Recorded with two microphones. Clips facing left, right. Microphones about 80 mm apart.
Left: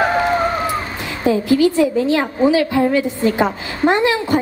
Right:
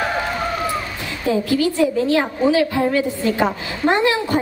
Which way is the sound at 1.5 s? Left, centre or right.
Centre.